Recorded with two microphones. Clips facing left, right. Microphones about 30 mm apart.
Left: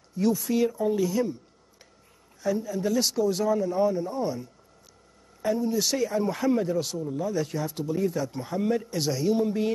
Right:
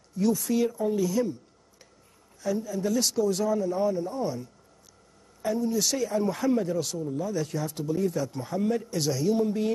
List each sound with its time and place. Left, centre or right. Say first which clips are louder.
0.2 s speech: left 1 dB; centre
2.4 s speech: left 1 dB; centre